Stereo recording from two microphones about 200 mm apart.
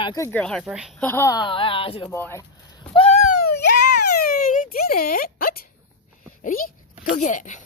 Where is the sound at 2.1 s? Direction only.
10° left (ahead or behind).